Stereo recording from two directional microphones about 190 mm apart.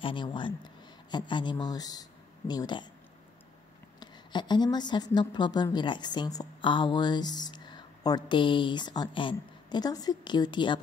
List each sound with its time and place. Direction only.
0.0 s a woman's voice: 25° left (ahead or behind)
4.0 s a woman's voice: 25° left (ahead or behind)